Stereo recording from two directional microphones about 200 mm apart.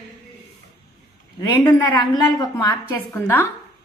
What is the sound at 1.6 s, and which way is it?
Speech, 10° left (ahead or behind).